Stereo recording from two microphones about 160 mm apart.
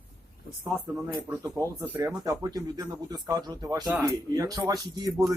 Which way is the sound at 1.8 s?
20° right (ahead or behind).